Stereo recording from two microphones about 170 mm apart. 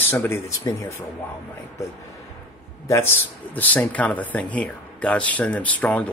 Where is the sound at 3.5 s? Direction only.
10° left (ahead or behind).